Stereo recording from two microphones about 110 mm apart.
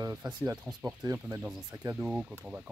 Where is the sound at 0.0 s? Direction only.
35° right (ahead or behind).